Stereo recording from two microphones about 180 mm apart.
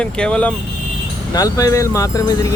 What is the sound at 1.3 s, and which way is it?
Speech, 20° left (ahead or behind).